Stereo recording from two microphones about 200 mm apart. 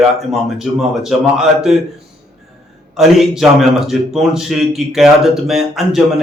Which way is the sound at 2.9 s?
Centre (ahead or behind).